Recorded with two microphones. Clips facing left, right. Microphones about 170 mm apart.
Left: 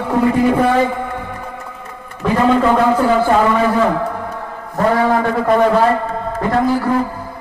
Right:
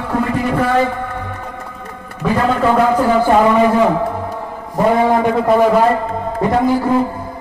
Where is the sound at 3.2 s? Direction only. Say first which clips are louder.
Right 2 dB; 15° right (ahead or behind).